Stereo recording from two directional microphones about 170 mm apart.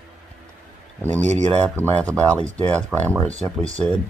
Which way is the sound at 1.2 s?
40° right (ahead or behind).